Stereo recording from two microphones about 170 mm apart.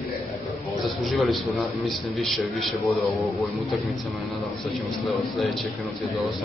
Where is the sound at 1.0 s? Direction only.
Centre (ahead or behind).